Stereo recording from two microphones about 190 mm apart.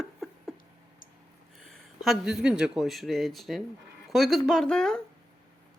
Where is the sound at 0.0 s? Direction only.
Centre (ahead or behind).